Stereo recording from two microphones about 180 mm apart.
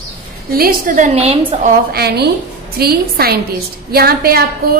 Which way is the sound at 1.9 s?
65° right (ahead or behind).